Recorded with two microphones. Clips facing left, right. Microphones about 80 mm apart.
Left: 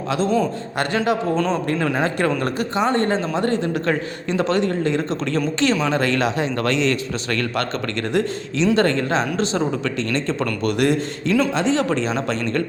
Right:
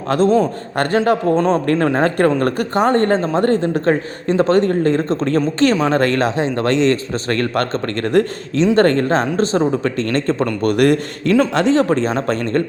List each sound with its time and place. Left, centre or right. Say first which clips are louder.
0.3 s a man's voice: right 5 dB; right